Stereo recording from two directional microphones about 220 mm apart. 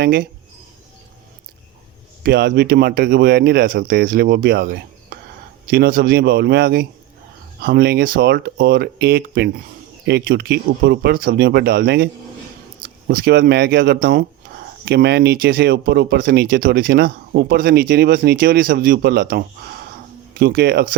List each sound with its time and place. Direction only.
0.0 s speech: 45° right (ahead or behind)
2.2 s speech: 45° right (ahead or behind)